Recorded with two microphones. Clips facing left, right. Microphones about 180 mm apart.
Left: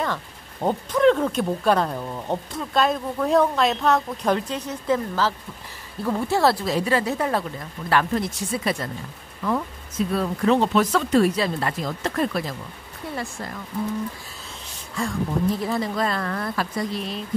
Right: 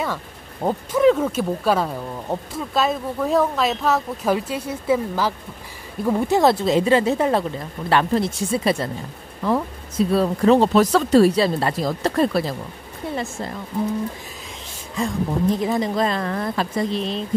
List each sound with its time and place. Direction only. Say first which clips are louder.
0.0 s speech: right 1 dB; 5° right (ahead or behind); by 13.6 s 25° right (ahead or behind)
15.0 s speech: right 2 dB; 20° right (ahead or behind)